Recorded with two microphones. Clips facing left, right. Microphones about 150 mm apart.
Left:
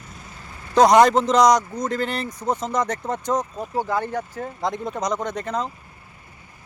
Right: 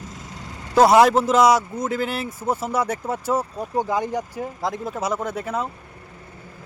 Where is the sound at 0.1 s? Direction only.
90° right.